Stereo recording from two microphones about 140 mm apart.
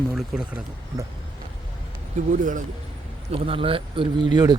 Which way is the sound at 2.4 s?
65° right (ahead or behind).